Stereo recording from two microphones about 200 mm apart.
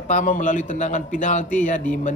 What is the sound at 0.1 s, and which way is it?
Speech, 40° left (ahead or behind).